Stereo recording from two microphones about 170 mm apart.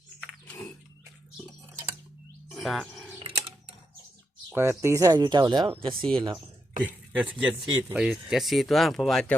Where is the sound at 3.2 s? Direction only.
30° right (ahead or behind).